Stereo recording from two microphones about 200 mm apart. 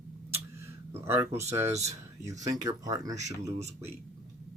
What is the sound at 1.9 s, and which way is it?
Speech, 15° right (ahead or behind).